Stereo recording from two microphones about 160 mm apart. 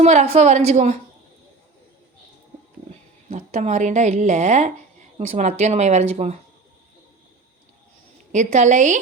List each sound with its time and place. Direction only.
0.0 s a woman's voice: 45° right (ahead or behind)
3.2 s a woman's voice: 45° right (ahead or behind)
8.3 s a woman's voice: 50° right (ahead or behind)